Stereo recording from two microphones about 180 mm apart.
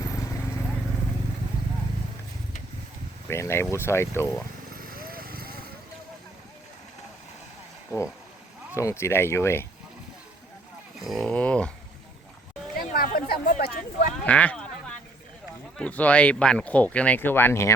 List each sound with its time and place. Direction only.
3.2 s speech: 15° left (ahead or behind)
4.7 s vehicle: 55° right (ahead or behind)
8.7 s speech: 15° left (ahead or behind)
11.0 s speech: centre (ahead or behind)
13.0 s a sound: 55° left (ahead or behind)
14.3 s a sound: 5° left (ahead or behind)
15.8 s speech: 10° left (ahead or behind)